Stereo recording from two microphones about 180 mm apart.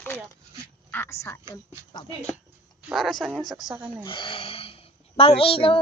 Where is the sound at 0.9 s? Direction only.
10° left (ahead or behind).